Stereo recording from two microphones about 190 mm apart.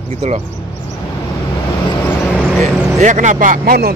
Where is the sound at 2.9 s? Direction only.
40° right (ahead or behind).